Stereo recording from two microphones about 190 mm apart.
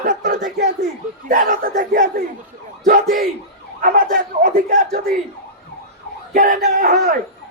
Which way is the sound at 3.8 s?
45° right (ahead or behind).